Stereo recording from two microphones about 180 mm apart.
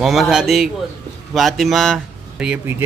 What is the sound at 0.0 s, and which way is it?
Speech, centre (ahead or behind).